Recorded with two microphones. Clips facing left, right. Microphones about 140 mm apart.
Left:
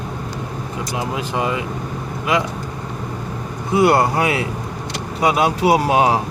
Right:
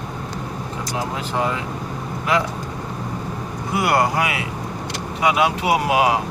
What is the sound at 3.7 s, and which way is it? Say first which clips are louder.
Speech: left 4 dB; 25° left (ahead or behind).